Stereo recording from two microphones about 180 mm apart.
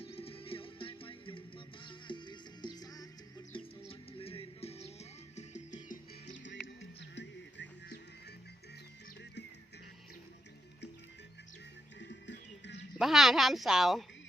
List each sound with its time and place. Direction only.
0.0 s music: 30° left (ahead or behind)
3.8 s music: 30° left (ahead or behind)
7.0 s music: 80° left
11.9 s music: 80° left
13.0 s a woman's voice: centre (ahead or behind)